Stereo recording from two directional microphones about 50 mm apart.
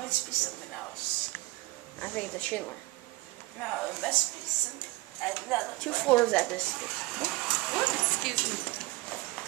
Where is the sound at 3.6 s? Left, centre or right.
Centre.